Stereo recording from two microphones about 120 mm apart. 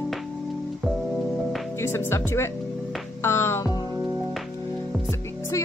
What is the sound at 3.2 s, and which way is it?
Music, 20° left (ahead or behind).